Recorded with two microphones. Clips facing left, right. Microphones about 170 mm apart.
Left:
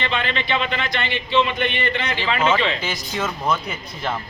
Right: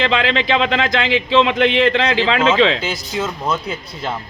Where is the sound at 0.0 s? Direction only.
90° right.